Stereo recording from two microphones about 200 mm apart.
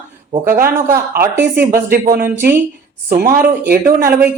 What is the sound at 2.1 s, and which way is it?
Speech, 45° right (ahead or behind).